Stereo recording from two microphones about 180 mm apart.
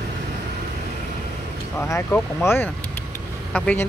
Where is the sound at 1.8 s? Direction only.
10° left (ahead or behind).